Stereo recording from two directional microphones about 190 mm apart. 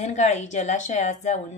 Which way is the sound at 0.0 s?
40° left (ahead or behind).